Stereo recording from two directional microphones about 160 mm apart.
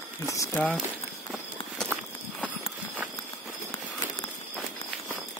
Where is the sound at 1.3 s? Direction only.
Centre (ahead or behind).